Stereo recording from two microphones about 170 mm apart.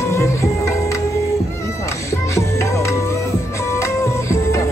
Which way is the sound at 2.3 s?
15° left (ahead or behind).